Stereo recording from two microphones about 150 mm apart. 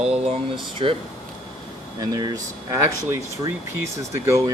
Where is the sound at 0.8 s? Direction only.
35° right (ahead or behind).